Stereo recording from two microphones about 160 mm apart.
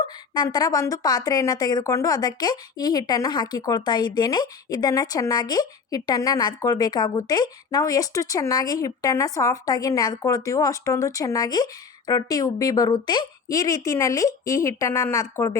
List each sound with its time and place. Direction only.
0.0 s a woman's voice: 25° left (ahead or behind)